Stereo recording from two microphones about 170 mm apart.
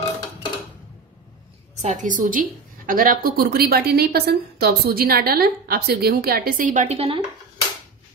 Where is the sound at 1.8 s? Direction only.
45° right (ahead or behind).